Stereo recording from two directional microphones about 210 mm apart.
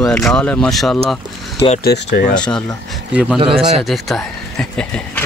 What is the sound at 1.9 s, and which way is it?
Speech, 45° left (ahead or behind).